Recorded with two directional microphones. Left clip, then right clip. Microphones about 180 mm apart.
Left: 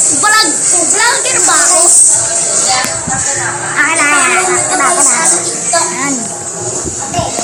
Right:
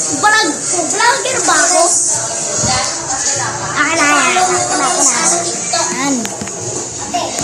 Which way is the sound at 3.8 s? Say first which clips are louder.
Left 2 dB; 30° right (ahead or behind).